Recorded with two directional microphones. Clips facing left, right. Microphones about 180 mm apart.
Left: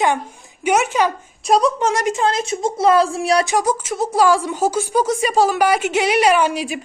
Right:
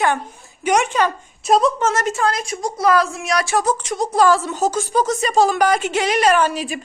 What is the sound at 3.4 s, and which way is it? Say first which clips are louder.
A woman's voice: left 1 dB; 10° left (ahead or behind).